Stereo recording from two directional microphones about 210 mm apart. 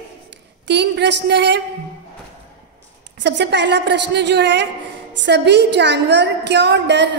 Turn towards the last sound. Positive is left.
turn(degrees=-55)  # may be behind; listen again after turning